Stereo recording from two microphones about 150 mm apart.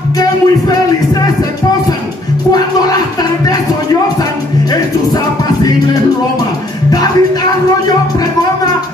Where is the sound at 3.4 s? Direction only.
25° left (ahead or behind).